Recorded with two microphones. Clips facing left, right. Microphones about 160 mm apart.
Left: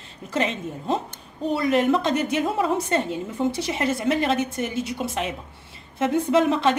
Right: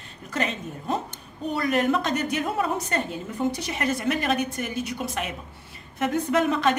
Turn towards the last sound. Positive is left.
turn(degrees=25)  # may be behind; listen again after turning